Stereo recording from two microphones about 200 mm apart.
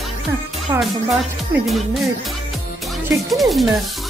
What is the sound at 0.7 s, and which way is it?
Speech, 15° right (ahead or behind).